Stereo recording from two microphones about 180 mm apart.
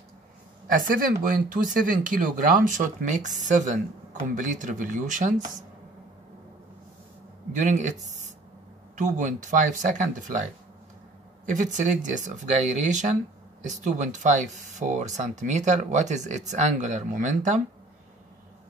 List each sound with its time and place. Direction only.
0.7 s speech: 50° right (ahead or behind)
7.5 s speech: 40° right (ahead or behind)
11.4 s speech: 45° right (ahead or behind)